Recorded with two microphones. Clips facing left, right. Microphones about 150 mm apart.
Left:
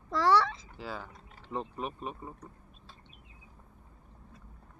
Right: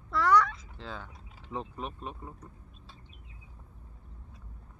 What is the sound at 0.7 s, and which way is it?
Speech, 5° left (ahead or behind).